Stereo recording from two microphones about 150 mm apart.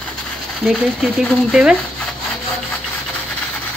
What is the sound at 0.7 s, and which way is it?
A woman's voice, centre (ahead or behind).